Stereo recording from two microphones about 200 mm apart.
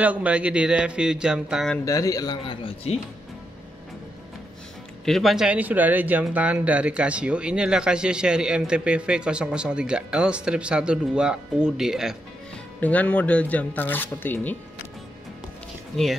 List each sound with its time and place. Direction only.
0.0 s speech: 5° right (ahead or behind)
1.9 s speech: 15° left (ahead or behind)
5.0 s speech: centre (ahead or behind)
16.0 s speech: centre (ahead or behind)